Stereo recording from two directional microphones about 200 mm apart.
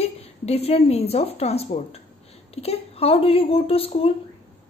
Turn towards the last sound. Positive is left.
turn(degrees=30)  # may be behind; listen again after turning